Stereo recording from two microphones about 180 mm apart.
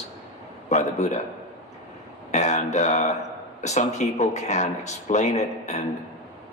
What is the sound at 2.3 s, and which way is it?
Speech, 40° left (ahead or behind).